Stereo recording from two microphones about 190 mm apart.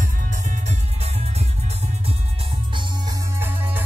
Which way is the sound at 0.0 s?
40° right (ahead or behind).